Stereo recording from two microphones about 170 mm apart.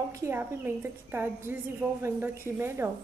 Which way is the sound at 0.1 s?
15° right (ahead or behind).